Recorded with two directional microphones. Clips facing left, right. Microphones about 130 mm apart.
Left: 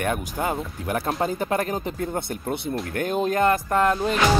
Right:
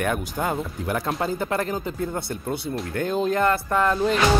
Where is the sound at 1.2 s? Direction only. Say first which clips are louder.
Left 1 dB; 20° left (ahead or behind).